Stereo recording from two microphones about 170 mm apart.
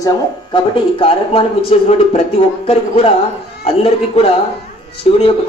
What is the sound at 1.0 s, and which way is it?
Speech, 35° left (ahead or behind).